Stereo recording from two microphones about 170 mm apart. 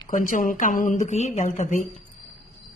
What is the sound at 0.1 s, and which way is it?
A woman's voice, 50° left (ahead or behind).